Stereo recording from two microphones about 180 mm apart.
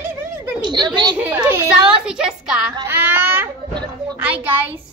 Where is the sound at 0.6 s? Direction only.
25° right (ahead or behind).